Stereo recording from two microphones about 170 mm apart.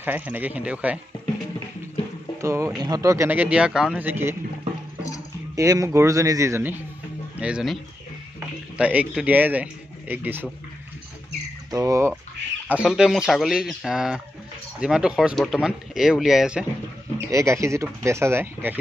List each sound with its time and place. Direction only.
0.0 s speech: 10° right (ahead or behind)
2.4 s speech: 15° right (ahead or behind)
5.6 s speech: 20° right (ahead or behind)
11.7 s speech: 20° right (ahead or behind)
12.6 s speech: 5° right (ahead or behind)
17.3 s speech: 15° right (ahead or behind)